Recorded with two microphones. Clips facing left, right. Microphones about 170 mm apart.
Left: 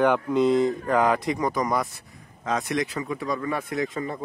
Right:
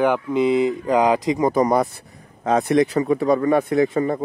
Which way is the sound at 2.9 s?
35° right (ahead or behind).